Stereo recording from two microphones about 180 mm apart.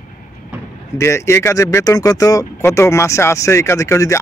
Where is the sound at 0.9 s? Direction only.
15° left (ahead or behind).